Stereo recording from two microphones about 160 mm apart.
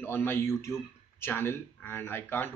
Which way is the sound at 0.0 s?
15° left (ahead or behind).